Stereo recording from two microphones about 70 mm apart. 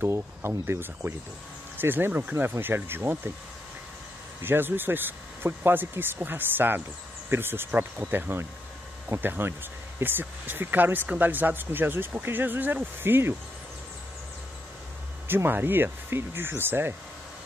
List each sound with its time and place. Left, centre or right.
0.0 s speech: right
4.4 s speech: right
15.2 s speech: right